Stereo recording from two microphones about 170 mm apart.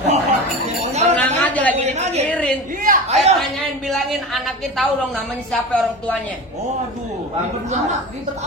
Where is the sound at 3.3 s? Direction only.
Centre (ahead or behind).